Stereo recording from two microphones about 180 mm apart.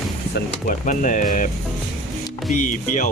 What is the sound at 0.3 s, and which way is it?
Speech, 45° left (ahead or behind).